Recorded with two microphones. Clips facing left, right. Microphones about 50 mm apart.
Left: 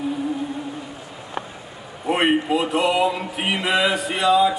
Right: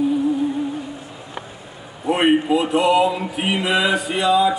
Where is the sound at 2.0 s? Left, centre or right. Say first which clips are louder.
Right 3 dB; centre.